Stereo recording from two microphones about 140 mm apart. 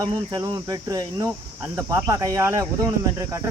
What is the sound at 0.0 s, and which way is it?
Speech, 25° right (ahead or behind).